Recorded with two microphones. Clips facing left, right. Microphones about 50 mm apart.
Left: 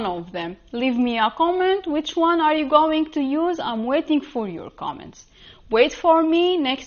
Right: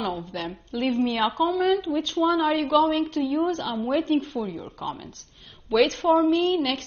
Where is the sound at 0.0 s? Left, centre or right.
Left.